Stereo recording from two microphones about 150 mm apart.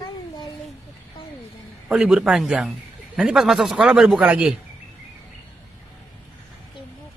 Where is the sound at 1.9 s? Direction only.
5° right (ahead or behind).